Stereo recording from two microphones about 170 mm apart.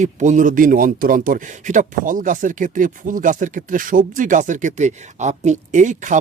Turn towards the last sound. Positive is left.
turn(degrees=-45)  # may be behind; listen again after turning